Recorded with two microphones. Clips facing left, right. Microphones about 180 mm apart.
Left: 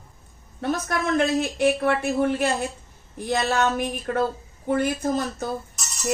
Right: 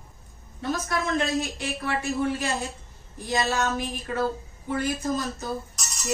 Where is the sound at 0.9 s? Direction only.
60° left (ahead or behind).